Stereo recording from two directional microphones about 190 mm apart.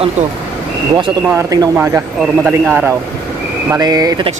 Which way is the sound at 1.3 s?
15° right (ahead or behind).